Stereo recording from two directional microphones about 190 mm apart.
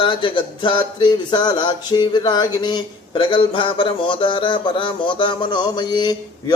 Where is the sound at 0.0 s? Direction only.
25° left (ahead or behind).